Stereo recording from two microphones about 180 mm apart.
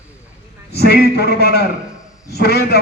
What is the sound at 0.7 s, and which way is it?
Speech, 60° left (ahead or behind).